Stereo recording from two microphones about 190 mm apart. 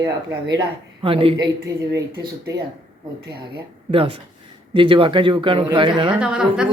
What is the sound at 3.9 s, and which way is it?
A man's voice, 30° right (ahead or behind).